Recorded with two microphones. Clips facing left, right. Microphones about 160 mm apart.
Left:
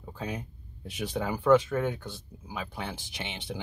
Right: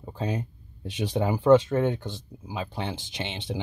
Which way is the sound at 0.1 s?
20° right (ahead or behind).